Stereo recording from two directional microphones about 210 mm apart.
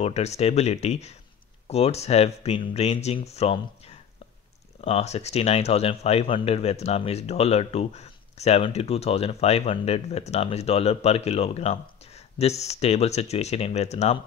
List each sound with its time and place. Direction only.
0.0 s speech: 30° left (ahead or behind)